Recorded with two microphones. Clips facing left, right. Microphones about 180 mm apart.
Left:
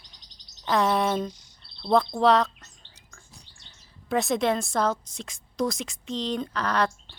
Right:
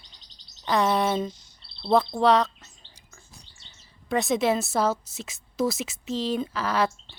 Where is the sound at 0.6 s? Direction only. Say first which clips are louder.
Even; centre (ahead or behind).